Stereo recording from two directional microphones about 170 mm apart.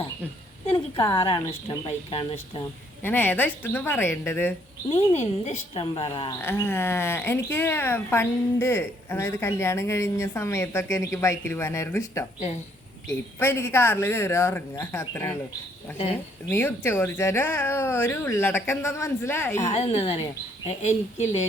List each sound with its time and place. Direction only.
0.9 s a woman's voice: 25° left (ahead or behind)
3.0 s speech: 10° left (ahead or behind)
4.9 s a woman's voice: 40° left (ahead or behind)
6.4 s speech: 15° left (ahead or behind)
16.5 s speech: 15° left (ahead or behind)
19.7 s a woman's voice: 35° left (ahead or behind)